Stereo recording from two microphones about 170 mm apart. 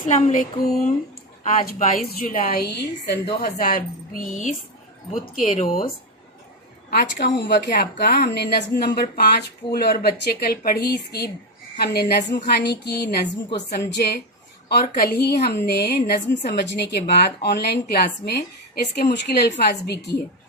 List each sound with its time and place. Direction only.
0.0 s a sound: 45° left (ahead or behind)
2.0 s a woman's voice: 50° left (ahead or behind)
6.9 s a woman's voice: 75° left (ahead or behind)